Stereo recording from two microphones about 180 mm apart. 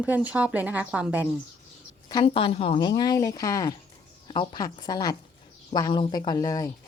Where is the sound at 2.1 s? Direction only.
30° left (ahead or behind).